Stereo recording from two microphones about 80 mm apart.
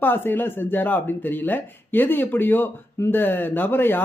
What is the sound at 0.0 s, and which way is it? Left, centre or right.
Speech, left.